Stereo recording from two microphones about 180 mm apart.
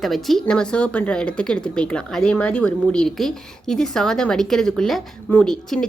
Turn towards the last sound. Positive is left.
turn(degrees=5)  # may be behind; listen again after turning